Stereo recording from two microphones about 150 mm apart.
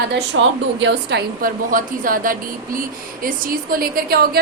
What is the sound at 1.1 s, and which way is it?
Speech, 90° right.